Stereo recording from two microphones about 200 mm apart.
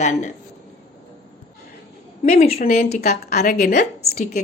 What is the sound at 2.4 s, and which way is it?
Speech, 35° left (ahead or behind).